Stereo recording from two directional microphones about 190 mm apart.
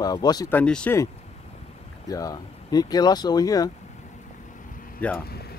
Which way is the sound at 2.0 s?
20° left (ahead or behind).